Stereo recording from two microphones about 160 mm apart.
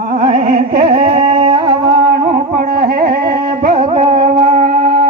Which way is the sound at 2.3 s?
75° right (ahead or behind).